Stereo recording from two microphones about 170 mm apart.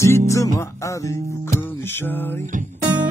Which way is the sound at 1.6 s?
15° left (ahead or behind).